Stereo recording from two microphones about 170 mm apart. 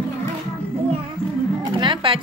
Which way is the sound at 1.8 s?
30° right (ahead or behind).